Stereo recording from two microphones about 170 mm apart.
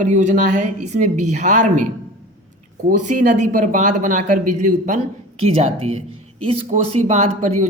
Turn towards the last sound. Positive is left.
turn(degrees=-45)  # may be behind; listen again after turning